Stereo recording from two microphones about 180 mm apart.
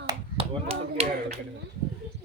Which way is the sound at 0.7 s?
35° right (ahead or behind).